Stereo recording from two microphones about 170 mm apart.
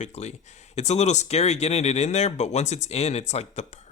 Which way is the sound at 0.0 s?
40° left (ahead or behind).